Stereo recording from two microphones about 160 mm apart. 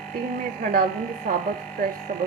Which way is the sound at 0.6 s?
60° right (ahead or behind).